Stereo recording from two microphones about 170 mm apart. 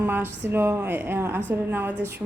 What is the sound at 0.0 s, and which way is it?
A woman's voice, 10° right (ahead or behind).